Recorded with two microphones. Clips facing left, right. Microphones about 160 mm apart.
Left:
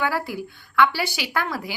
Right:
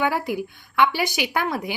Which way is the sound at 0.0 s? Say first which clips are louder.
Right 2 dB; 20° right (ahead or behind).